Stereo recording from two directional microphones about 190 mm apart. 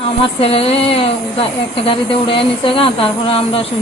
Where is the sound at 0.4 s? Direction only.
30° left (ahead or behind).